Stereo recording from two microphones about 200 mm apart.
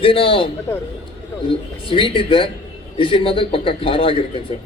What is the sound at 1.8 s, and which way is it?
A man's voice, 25° left (ahead or behind).